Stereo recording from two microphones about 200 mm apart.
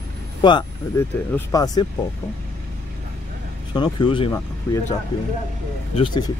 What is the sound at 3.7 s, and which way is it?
Speech, 20° left (ahead or behind).